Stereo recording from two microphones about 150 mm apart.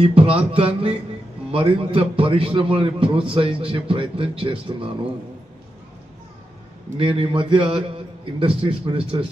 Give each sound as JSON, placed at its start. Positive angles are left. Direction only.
{"t": 0.0, "sound": "a man's voice", "side_deg": -40}
{"t": 7.0, "sound": "a man's voice", "side_deg": -35}